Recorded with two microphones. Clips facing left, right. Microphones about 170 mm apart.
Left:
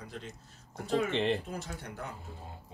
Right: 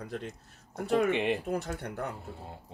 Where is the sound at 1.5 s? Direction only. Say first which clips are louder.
Right 7 dB; 60° right (ahead or behind).